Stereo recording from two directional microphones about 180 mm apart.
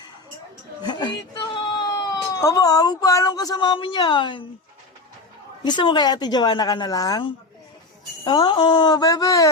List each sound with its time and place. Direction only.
0.8 s a sound: 25° left (ahead or behind)
2.3 s speech: 20° left (ahead or behind)
5.6 s speech: 25° left (ahead or behind)